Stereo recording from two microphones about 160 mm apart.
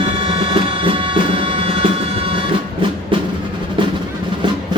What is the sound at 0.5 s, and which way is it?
Music, 35° right (ahead or behind).